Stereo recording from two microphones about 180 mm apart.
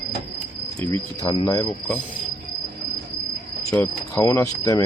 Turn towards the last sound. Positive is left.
turn(degrees=15)  # may be behind; listen again after turning